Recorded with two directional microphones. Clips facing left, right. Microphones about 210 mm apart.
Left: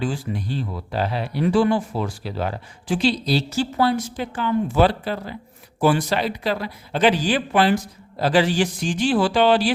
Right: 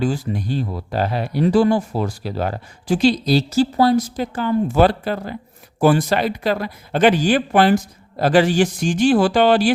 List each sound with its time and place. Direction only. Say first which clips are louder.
0.0 s speech: right 4 dB; 45° right (ahead or behind)